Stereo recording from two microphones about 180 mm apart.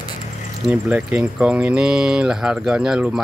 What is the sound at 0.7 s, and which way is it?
Speech, 5° right (ahead or behind).